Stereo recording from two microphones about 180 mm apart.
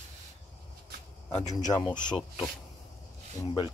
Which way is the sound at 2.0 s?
25° left (ahead or behind).